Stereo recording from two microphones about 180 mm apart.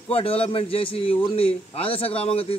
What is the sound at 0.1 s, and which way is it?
Speech, 30° left (ahead or behind).